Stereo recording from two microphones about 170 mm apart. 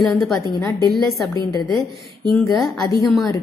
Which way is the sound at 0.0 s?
Centre (ahead or behind).